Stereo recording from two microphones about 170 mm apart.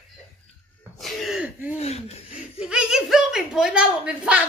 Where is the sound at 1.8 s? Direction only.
35° left (ahead or behind).